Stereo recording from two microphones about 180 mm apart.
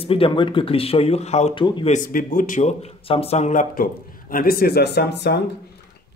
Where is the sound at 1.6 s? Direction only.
25° left (ahead or behind).